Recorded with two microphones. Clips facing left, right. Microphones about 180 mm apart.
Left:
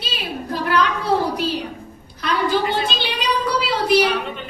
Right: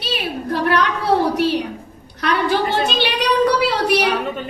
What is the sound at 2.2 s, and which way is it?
A woman's voice, 70° right (ahead or behind).